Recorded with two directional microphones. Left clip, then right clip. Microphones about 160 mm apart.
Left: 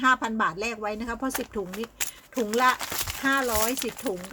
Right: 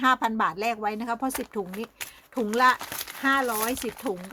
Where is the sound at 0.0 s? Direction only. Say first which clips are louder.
Even; 35° right (ahead or behind).